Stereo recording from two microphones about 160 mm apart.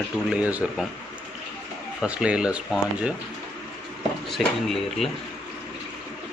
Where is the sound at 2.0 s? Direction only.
5° right (ahead or behind).